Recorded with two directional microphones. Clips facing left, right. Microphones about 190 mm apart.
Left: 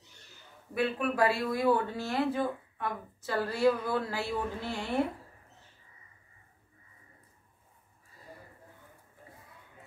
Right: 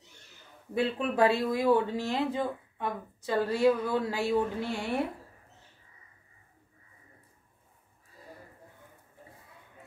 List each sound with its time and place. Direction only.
0.7 s speech: 25° right (ahead or behind)